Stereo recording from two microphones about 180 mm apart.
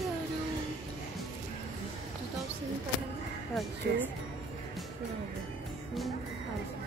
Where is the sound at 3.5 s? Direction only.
Centre (ahead or behind).